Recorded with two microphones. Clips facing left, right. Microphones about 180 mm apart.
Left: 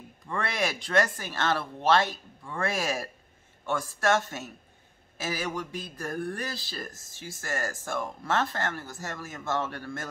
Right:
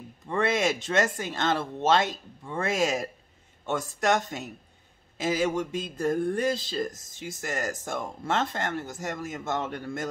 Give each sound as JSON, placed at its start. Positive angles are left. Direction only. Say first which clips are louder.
{"t": 0.3, "sound": "speech", "louder": "right 5 dB", "side_deg": -20}